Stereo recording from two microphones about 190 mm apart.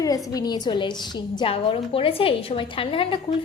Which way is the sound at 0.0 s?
20° left (ahead or behind).